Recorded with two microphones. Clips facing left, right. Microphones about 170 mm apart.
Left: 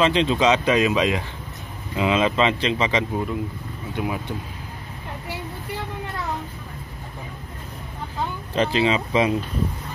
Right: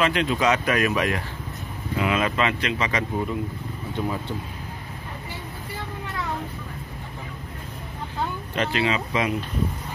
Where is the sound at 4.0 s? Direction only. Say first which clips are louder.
Left 1 dB; 10° left (ahead or behind).